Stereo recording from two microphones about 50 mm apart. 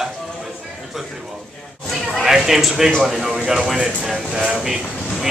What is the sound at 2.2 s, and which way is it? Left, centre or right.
Speech, centre.